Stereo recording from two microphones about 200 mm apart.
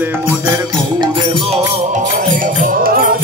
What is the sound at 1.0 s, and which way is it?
Music, 25° right (ahead or behind).